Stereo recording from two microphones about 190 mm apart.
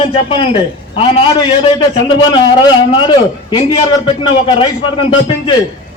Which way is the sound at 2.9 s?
25° left (ahead or behind).